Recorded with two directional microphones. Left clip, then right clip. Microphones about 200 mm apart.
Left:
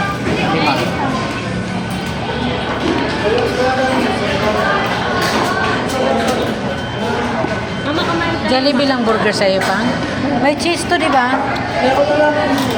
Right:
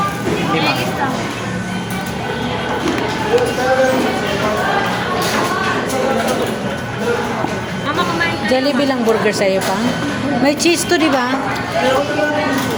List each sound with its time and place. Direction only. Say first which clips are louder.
8.5 s speech: left 2 dB; 20° right (ahead or behind)
10.4 s a woman's voice: right 2 dB; 40° right (ahead or behind)